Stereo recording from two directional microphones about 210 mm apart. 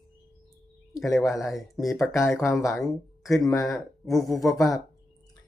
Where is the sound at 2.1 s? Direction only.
10° left (ahead or behind).